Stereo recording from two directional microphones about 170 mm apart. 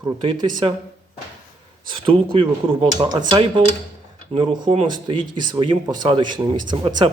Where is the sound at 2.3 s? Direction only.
30° right (ahead or behind).